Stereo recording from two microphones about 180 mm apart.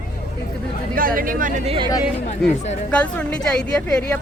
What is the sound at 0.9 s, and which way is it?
Speech, 50° right (ahead or behind).